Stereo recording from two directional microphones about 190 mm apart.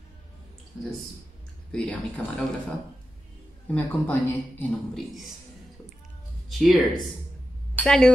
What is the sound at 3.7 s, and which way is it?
Speech, 10° left (ahead or behind).